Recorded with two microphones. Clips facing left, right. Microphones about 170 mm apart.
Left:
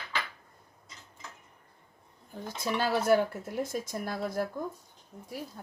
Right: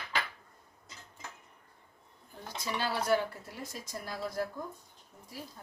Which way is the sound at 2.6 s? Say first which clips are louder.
Left 5 dB; 50° left (ahead or behind).